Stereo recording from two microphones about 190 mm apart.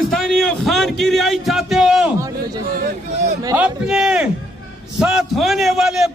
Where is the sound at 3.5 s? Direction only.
5° right (ahead or behind).